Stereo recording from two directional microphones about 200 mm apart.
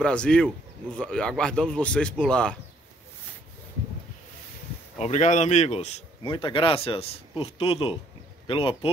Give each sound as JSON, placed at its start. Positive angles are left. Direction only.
{"t": 0.0, "sound": "speech", "side_deg": 5}
{"t": 4.9, "sound": "speech", "side_deg": 35}